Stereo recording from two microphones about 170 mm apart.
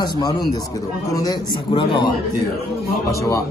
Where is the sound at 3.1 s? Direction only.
20° left (ahead or behind).